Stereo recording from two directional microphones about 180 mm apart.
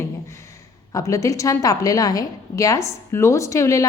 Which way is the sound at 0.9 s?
20° left (ahead or behind).